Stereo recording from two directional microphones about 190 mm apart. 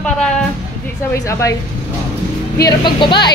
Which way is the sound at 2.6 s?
25° left (ahead or behind).